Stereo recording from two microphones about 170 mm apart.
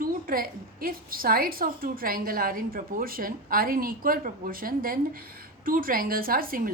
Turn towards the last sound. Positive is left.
turn(degrees=-60)  # may be behind; listen again after turning